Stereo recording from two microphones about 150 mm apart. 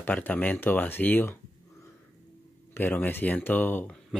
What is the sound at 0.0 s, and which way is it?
Speech, 10° left (ahead or behind).